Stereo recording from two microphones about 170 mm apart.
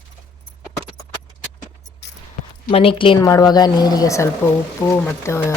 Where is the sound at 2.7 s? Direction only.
35° left (ahead or behind).